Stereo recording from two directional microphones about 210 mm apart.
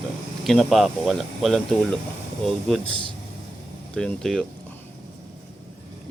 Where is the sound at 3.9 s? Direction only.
Centre (ahead or behind).